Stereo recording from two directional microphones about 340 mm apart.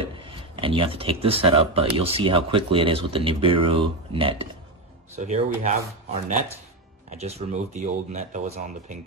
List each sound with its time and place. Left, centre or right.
0.0 s speech: centre
7.1 s speech: centre